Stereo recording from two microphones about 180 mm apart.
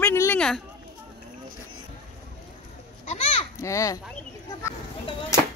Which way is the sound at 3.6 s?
15° left (ahead or behind).